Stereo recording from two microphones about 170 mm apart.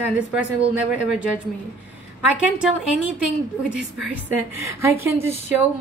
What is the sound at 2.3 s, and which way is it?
A woman's voice, 10° right (ahead or behind).